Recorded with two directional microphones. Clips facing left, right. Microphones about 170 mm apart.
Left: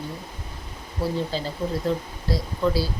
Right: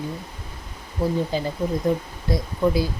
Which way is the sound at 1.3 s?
20° right (ahead or behind).